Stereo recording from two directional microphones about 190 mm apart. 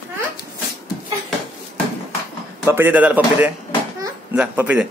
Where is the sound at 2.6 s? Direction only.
10° right (ahead or behind).